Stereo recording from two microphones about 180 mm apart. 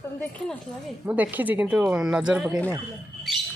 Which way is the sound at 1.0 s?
10° right (ahead or behind).